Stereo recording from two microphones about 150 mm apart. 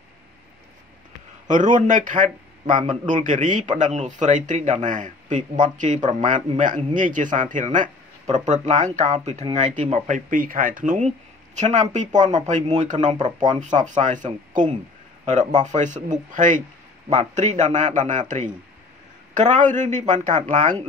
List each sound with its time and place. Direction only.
1.5 s speech: 55° right (ahead or behind)